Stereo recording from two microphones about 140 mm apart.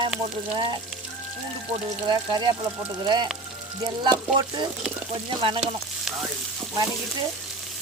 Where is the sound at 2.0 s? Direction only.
35° right (ahead or behind).